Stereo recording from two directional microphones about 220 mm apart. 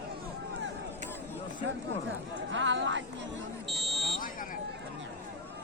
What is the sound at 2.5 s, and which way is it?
Speech, 55° right (ahead or behind).